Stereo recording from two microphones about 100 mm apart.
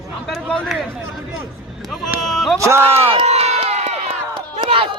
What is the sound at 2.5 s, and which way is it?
Speech, 30° right (ahead or behind).